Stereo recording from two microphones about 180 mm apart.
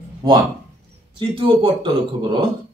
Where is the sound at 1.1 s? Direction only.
30° right (ahead or behind).